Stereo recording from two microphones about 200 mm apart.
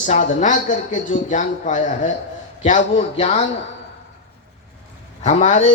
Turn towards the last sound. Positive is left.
turn(degrees=35)  # may be behind; listen again after turning